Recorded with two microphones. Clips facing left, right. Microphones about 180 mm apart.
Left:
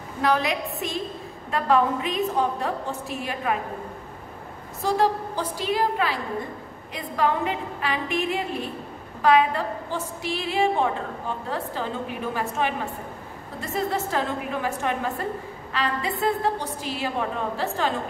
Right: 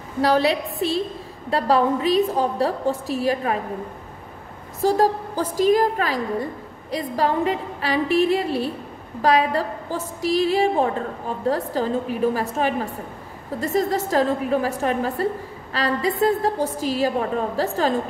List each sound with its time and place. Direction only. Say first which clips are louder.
0.2 s a woman's voice: right 5 dB; 35° right (ahead or behind)
4.8 s a woman's voice: right 4 dB; 40° right (ahead or behind)